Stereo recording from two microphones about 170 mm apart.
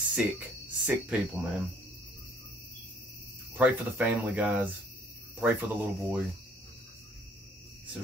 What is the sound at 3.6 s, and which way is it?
Speech, 10° right (ahead or behind).